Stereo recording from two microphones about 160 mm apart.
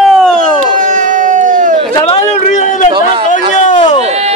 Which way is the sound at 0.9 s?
55° right (ahead or behind).